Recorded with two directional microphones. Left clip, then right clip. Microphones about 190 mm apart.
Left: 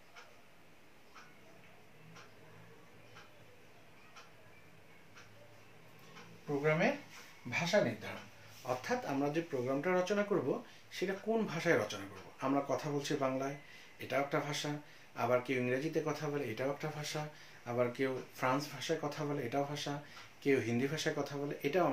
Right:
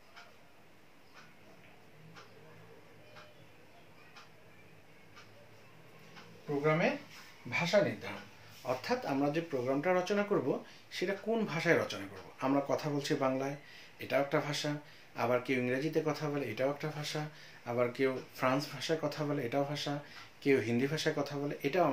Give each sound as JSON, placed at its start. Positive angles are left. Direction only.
{"t": 7.4, "sound": "speech", "side_deg": -15}